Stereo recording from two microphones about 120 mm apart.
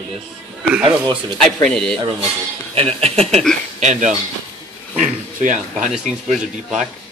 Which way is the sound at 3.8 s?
85° right.